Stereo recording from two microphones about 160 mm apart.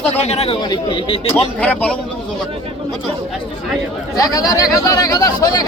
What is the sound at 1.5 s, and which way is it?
Speech, 10° left (ahead or behind).